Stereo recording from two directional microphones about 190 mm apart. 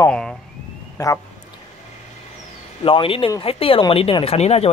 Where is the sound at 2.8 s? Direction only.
30° left (ahead or behind).